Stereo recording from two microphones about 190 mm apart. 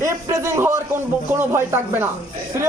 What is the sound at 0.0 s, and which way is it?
A man's voice, 15° right (ahead or behind).